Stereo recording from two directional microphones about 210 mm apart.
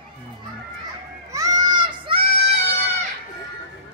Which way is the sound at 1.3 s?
15° right (ahead or behind).